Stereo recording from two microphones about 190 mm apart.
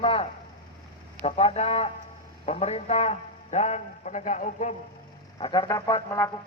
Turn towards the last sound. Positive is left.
turn(degrees=15)  # may be behind; listen again after turning